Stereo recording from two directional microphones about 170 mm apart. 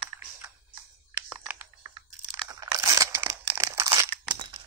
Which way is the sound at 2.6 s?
20° right (ahead or behind).